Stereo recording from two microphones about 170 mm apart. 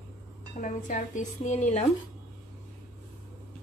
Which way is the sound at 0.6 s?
50° left (ahead or behind).